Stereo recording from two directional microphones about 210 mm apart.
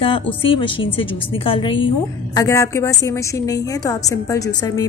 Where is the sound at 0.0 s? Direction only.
25° left (ahead or behind).